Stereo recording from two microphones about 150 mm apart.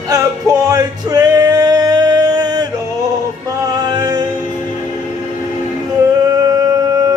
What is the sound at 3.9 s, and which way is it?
Music, 25° right (ahead or behind).